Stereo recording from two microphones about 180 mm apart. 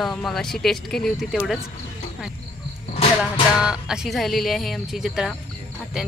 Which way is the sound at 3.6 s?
5° right (ahead or behind).